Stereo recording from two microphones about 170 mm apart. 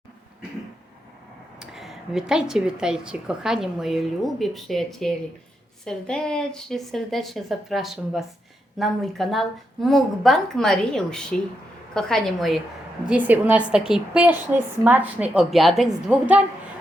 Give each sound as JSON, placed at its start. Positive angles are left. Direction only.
{"t": 1.5, "sound": "a woman's voice", "side_deg": 0}
{"t": 13.1, "sound": "a woman's voice", "side_deg": -10}